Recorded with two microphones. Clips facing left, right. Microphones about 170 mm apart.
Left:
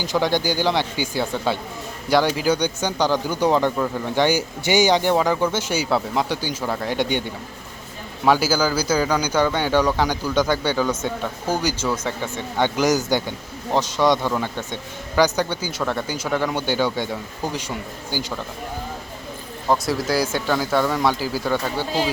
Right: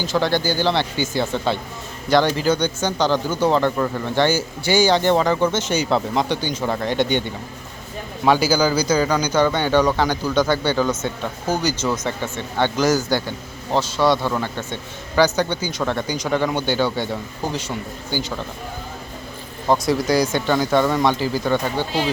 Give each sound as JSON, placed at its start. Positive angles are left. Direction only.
{"t": 0.0, "sound": "speech", "side_deg": 15}
{"t": 8.3, "sound": "speech", "side_deg": 5}
{"t": 19.8, "sound": "speech", "side_deg": 5}